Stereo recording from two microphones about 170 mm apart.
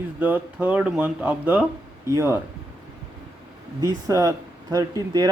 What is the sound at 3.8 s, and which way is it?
Speech, 20° right (ahead or behind).